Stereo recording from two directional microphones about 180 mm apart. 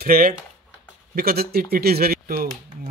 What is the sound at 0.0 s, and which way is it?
Speech, 55° right (ahead or behind).